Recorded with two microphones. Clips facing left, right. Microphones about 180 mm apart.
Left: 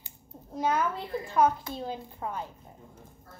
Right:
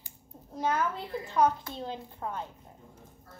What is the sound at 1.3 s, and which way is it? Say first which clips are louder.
A child's voice: left 1 dB; 5° left (ahead or behind).